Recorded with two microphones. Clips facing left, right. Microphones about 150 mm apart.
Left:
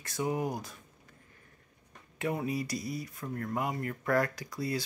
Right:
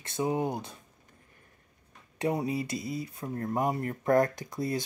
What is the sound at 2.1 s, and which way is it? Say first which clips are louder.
Speech: right 3 dB; 30° right (ahead or behind).